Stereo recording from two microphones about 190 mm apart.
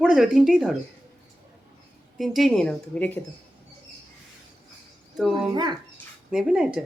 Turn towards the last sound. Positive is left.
turn(degrees=-5)  # may be behind; listen again after turning